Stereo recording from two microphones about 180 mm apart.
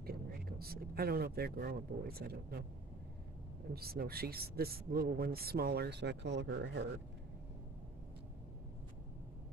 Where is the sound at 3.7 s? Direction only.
60° right (ahead or behind).